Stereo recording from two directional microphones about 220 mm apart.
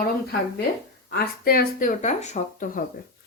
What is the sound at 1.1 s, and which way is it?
Speech, 45° left (ahead or behind).